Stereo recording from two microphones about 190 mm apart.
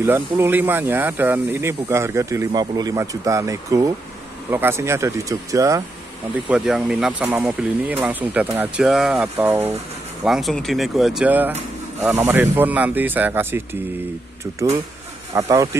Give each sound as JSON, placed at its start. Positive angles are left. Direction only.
{"t": 0.0, "sound": "speech", "side_deg": -10}
{"t": 6.5, "sound": "speech", "side_deg": -5}
{"t": 7.2, "sound": "speech", "side_deg": -15}
{"t": 15.3, "sound": "speech", "side_deg": -15}